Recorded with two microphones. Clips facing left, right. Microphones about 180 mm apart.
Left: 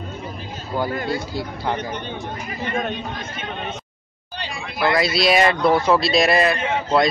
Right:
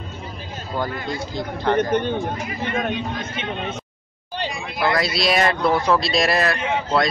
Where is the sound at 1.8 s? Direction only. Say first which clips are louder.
Right 9 dB; 55° right (ahead or behind).